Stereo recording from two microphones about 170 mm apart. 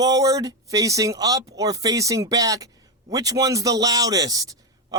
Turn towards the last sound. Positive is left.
turn(degrees=-20)  # may be behind; listen again after turning